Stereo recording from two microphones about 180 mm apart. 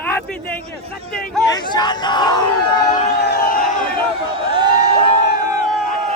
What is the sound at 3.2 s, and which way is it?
Crowd, 60° left (ahead or behind).